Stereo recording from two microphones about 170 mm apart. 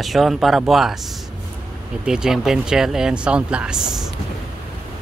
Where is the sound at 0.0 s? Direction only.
Centre (ahead or behind).